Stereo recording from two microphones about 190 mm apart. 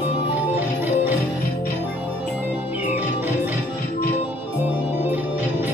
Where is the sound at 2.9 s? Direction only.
10° right (ahead or behind).